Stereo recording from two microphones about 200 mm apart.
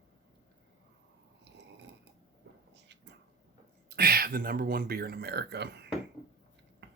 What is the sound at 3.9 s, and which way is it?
Speech, 50° right (ahead or behind).